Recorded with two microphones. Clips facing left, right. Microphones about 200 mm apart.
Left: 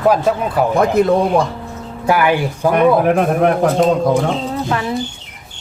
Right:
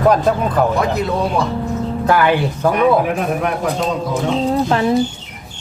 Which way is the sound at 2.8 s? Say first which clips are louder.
Left 4 dB; 55° left (ahead or behind).